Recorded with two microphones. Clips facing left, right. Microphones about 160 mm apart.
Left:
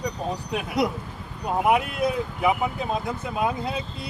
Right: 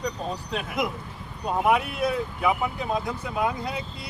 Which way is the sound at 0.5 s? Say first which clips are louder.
Left 4 dB; 15° left (ahead or behind).